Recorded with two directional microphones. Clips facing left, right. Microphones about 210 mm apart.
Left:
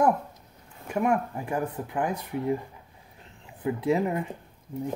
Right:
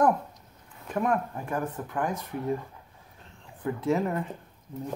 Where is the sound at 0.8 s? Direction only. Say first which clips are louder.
Left 2 dB; 15° left (ahead or behind).